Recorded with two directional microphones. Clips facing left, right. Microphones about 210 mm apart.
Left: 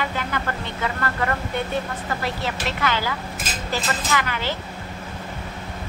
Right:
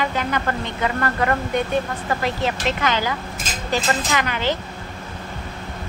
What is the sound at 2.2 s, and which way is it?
A woman's voice, 20° right (ahead or behind).